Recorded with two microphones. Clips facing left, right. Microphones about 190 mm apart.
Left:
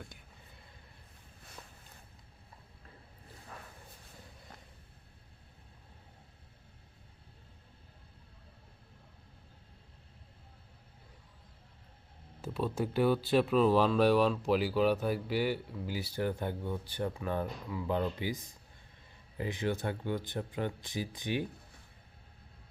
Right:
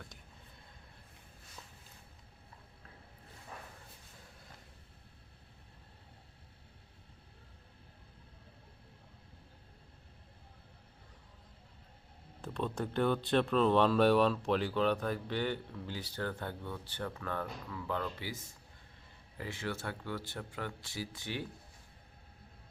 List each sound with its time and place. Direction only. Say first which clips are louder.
12.4 s speech: left 3 dB; 5° left (ahead or behind)